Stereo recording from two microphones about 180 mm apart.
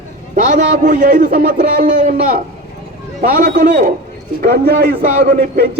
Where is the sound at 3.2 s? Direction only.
50° right (ahead or behind).